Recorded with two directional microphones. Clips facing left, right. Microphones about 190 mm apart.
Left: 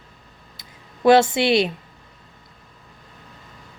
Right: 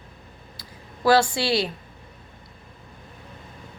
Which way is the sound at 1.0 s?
20° left (ahead or behind).